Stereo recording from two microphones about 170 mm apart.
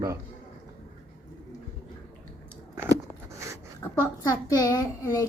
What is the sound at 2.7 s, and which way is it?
Biting, 15° right (ahead or behind).